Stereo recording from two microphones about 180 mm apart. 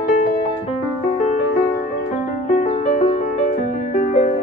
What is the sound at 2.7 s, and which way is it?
Music, 45° left (ahead or behind).